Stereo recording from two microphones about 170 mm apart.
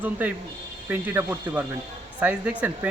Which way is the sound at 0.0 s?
10° right (ahead or behind).